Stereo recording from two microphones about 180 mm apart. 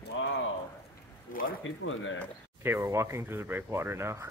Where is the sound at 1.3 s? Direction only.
50° left (ahead or behind).